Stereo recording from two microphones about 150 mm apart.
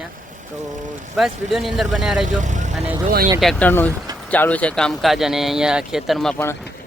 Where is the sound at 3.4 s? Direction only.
5° left (ahead or behind).